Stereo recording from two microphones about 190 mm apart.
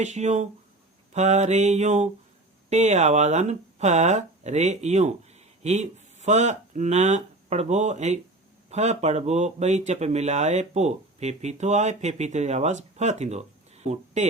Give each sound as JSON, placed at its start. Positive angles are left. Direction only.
{"t": 0.0, "sound": "speech", "side_deg": -35}